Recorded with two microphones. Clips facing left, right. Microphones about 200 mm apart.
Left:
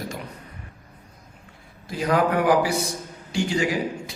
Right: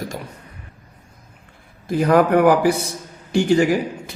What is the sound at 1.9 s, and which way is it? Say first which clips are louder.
A man's voice: right 7 dB; 55° right (ahead or behind).